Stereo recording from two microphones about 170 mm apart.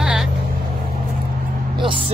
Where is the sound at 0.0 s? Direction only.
5° right (ahead or behind).